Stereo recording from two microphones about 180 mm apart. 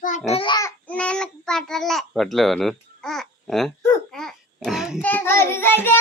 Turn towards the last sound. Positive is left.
turn(degrees=10)  # may be behind; listen again after turning